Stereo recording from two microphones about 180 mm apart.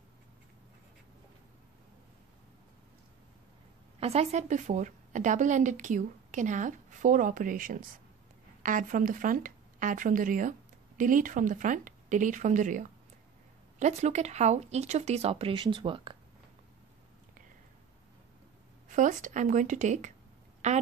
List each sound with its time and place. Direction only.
4.0 s a woman's voice: 35° right (ahead or behind)
18.9 s a woman's voice: 45° right (ahead or behind)